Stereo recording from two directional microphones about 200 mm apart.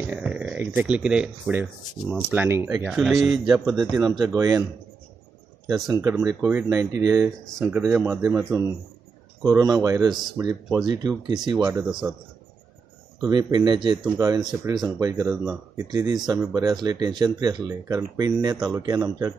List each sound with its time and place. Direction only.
0.0 s speech: 5° right (ahead or behind)
3.9 s speech: 20° right (ahead or behind)
5.9 s speech: 15° right (ahead or behind)
13.2 s speech: 20° right (ahead or behind)